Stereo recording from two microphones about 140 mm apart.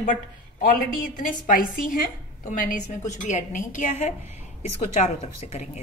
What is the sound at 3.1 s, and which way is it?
A woman's voice, 60° left (ahead or behind).